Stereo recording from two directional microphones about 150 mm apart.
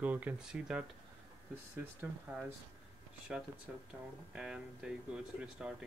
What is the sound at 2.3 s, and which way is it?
Speech, 10° right (ahead or behind).